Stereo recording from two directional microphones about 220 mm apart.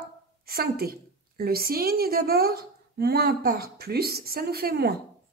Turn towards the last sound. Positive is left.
turn(degrees=-45)  # may be behind; listen again after turning